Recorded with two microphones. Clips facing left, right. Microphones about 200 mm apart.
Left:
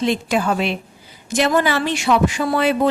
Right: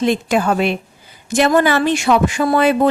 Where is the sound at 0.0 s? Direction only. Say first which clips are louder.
Right 3 dB; 50° right (ahead or behind).